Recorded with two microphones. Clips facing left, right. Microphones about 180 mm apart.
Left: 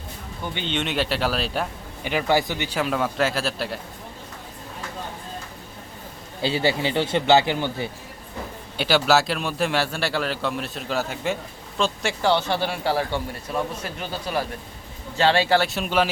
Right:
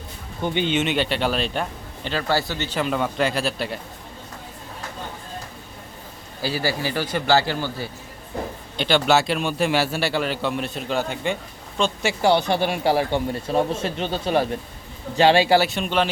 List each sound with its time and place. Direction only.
0.4 s a man's voice: 15° right (ahead or behind)
0.7 s a man's voice: centre (ahead or behind)
2.0 s a man's voice: 15° left (ahead or behind); by 3.8 s centre (ahead or behind)
6.4 s a man's voice: 25° left (ahead or behind)
8.8 s a man's voice: 5° left (ahead or behind)
12.2 s a man's voice: 15° right (ahead or behind)
15.6 s a man's voice: 5° left (ahead or behind)